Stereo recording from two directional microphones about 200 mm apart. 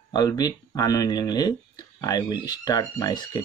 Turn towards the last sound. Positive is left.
turn(degrees=20)  # may be behind; listen again after turning